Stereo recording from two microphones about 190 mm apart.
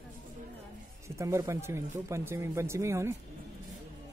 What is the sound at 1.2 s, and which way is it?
Speech, 15° right (ahead or behind).